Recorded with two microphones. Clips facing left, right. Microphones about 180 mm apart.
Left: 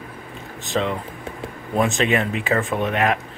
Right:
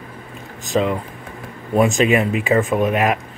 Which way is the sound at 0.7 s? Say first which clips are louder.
Right 4 dB; 5° right (ahead or behind).